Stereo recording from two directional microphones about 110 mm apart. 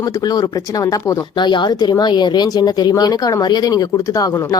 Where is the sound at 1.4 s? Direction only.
45° left (ahead or behind).